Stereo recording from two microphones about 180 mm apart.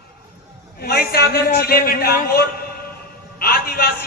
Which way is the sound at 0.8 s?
60° left (ahead or behind).